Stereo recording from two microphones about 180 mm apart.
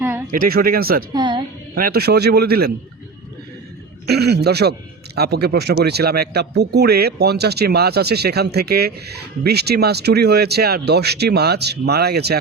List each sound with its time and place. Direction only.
0.3 s speech: 55° right (ahead or behind)
1.1 s a woman's voice: 25° right (ahead or behind)
1.7 s speech: 55° right (ahead or behind)
4.0 s speech: 65° right (ahead or behind)